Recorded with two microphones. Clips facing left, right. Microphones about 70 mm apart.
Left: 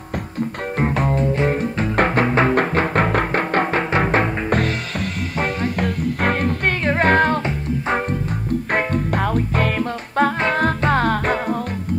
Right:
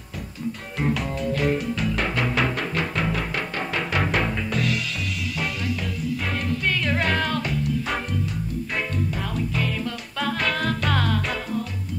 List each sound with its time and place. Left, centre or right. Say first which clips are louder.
0.7 s music: left 6 dB; left
3.7 s music: left 6 dB; left
4.5 s music: left 5 dB; left
6.8 s music: left 12 dB; left
8.7 s music: left 7 dB; left